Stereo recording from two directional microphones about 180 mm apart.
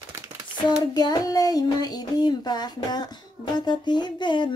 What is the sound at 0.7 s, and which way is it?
Child singing, 25° left (ahead or behind).